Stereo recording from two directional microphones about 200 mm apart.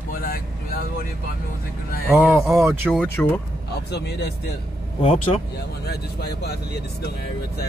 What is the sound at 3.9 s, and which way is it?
Speech, 55° left (ahead or behind).